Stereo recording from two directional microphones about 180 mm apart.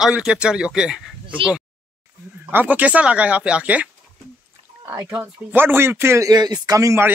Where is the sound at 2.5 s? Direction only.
10° right (ahead or behind).